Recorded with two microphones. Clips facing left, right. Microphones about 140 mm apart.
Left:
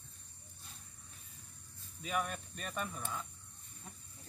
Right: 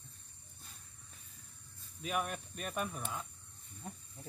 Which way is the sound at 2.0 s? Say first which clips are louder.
Even; 5° right (ahead or behind).